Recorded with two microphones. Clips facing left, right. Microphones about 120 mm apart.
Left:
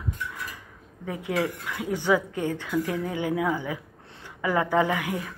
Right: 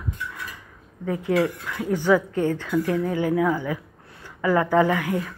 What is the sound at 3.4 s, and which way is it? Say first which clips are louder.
A woman's voice: right 4 dB; 20° left (ahead or behind).